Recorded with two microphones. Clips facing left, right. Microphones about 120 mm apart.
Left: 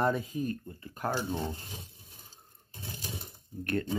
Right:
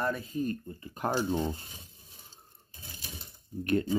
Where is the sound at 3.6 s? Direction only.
15° right (ahead or behind).